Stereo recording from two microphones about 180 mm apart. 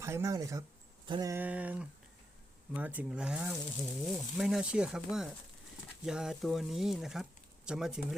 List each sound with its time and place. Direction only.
0.0 s speech: 15° right (ahead or behind)
1.0 s a sound: 25° right (ahead or behind)
1.4 s speech: 10° right (ahead or behind)